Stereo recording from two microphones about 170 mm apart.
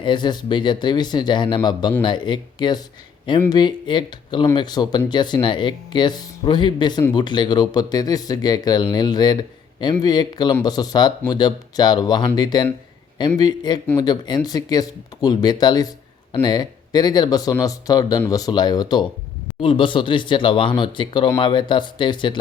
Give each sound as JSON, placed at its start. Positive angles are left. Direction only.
{"t": 0.0, "sound": "speech", "side_deg": 25}